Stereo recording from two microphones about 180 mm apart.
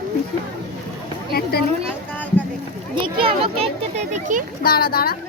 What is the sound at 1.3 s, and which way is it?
Speech, 60° left (ahead or behind).